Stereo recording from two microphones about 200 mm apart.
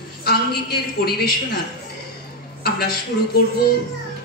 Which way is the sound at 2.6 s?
50° left (ahead or behind).